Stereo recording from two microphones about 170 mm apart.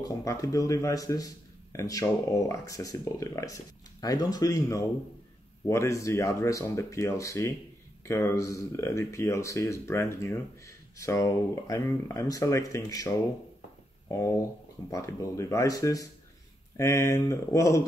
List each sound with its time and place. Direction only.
0.1 s a man's voice: 20° left (ahead or behind)